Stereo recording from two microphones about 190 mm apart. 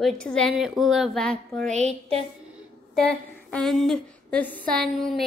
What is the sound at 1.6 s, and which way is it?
Speech, 35° right (ahead or behind).